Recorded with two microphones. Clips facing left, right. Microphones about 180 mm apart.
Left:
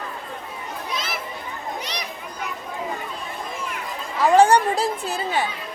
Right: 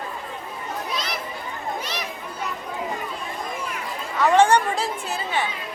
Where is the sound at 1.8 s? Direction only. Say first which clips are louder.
Right 1 dB; 15° left (ahead or behind).